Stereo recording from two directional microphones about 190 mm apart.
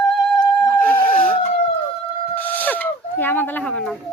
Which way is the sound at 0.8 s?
5° left (ahead or behind).